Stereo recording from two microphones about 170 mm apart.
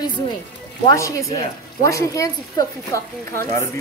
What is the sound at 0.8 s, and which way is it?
Speech, 20° left (ahead or behind).